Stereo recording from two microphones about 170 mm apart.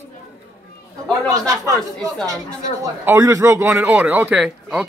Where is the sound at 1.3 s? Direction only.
20° right (ahead or behind).